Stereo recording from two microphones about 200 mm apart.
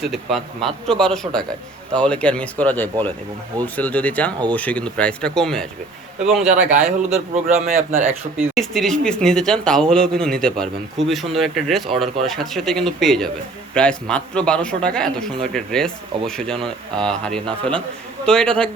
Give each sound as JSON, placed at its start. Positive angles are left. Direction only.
{"t": 0.0, "sound": "speech", "side_deg": 0}
{"t": 6.6, "sound": "speech", "side_deg": -35}
{"t": 7.9, "sound": "speech", "side_deg": -10}
{"t": 8.5, "sound": "speech", "side_deg": 0}